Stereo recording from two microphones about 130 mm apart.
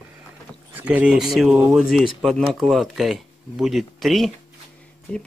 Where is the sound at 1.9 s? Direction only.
Centre (ahead or behind).